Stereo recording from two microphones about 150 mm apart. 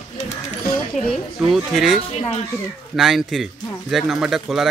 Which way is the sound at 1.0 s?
55° left (ahead or behind).